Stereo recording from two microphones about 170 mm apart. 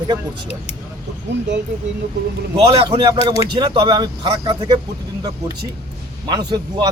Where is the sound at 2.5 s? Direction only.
35° right (ahead or behind).